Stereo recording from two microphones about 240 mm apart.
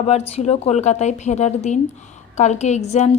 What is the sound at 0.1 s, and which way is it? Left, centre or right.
A woman's voice, left.